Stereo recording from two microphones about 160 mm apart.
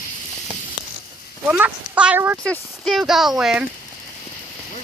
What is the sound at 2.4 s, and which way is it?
Speech, 5° left (ahead or behind).